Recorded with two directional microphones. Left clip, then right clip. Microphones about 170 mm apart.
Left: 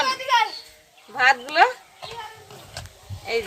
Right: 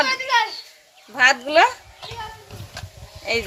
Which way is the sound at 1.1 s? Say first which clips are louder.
Right 3 dB; 55° right (ahead or behind).